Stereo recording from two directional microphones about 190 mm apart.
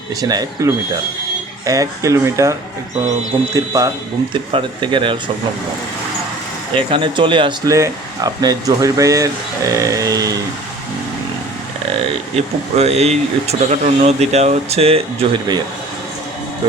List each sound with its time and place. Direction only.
0.2 s speech: 20° right (ahead or behind)
6.7 s speech: 25° right (ahead or behind)
12.7 s speech: 35° right (ahead or behind)